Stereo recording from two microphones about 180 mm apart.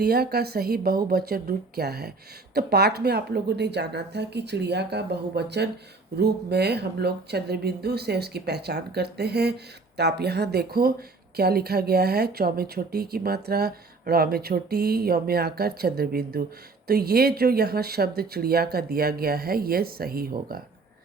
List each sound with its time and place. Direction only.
0.0 s speech: 60° right (ahead or behind)